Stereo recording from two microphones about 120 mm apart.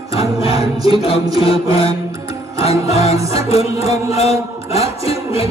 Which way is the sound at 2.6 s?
60° left (ahead or behind).